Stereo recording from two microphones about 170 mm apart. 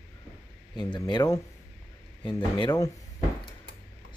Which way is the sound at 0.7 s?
25° left (ahead or behind).